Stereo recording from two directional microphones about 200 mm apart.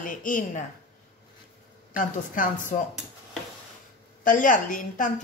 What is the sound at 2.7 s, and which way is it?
Speech, 30° left (ahead or behind).